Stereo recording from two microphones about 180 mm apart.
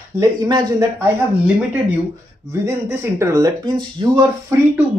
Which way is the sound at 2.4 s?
15° right (ahead or behind).